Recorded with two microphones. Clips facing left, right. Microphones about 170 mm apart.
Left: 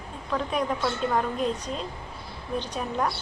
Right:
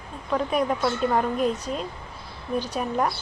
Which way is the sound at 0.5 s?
10° right (ahead or behind).